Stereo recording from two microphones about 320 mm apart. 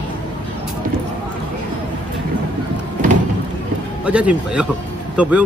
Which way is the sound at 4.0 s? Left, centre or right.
Centre.